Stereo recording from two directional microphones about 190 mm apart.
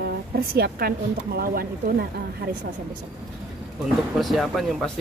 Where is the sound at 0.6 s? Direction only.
55° right (ahead or behind).